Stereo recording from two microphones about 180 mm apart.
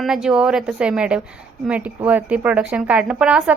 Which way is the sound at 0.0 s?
Centre (ahead or behind).